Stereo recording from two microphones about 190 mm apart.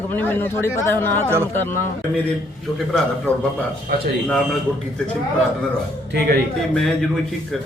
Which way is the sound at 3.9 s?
55° right (ahead or behind).